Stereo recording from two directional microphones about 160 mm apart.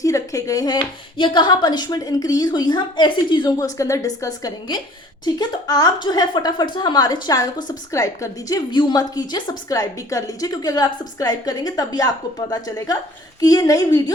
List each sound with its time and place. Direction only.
0.0 s dishes: 20° left (ahead or behind)
1.2 s a woman's voice: 30° left (ahead or behind)